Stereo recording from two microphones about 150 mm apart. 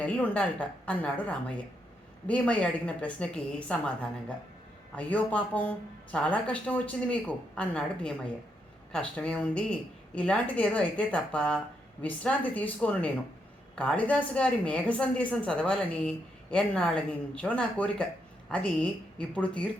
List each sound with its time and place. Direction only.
0.0 s a woman's voice: 10° left (ahead or behind)
4.9 s a woman's voice: 10° left (ahead or behind)